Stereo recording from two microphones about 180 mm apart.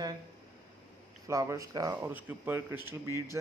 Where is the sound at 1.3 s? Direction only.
15° right (ahead or behind).